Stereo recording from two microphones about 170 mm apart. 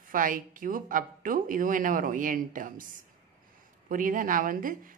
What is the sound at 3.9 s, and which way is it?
A woman's voice, 55° right (ahead or behind).